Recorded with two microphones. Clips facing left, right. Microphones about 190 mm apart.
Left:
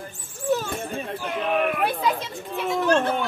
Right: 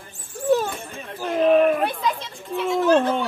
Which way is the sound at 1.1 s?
40° right (ahead or behind).